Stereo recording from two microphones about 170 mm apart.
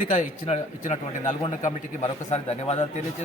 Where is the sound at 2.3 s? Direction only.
40° left (ahead or behind).